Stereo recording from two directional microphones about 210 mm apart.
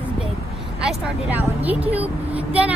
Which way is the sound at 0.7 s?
5° right (ahead or behind).